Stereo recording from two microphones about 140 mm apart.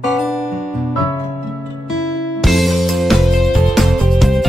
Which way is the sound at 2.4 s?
Centre (ahead or behind).